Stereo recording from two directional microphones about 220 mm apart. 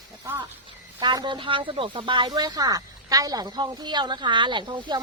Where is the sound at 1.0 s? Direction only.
20° right (ahead or behind).